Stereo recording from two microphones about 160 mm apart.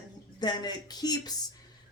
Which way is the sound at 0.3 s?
25° left (ahead or behind).